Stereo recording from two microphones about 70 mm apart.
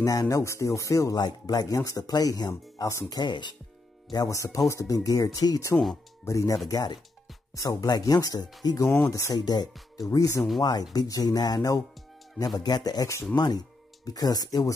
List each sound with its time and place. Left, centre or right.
0.0 s speech: left
1.2 s speech: left
4.3 s speech: left
6.7 s speech: left
7.5 s speech: left
9.9 s speech: left
10.6 s speech: left